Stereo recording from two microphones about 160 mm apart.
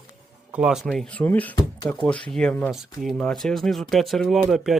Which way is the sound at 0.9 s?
10° left (ahead or behind).